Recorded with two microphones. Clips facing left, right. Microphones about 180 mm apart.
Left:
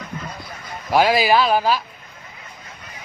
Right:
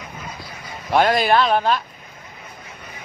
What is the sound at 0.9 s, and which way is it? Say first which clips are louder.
Speech: even; 5° left (ahead or behind).